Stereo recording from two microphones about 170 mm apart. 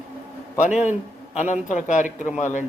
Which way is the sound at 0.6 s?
45° left (ahead or behind).